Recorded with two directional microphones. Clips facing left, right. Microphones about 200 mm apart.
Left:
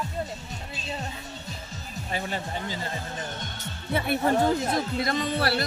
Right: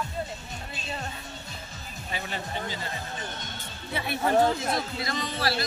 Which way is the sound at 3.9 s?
55° left (ahead or behind).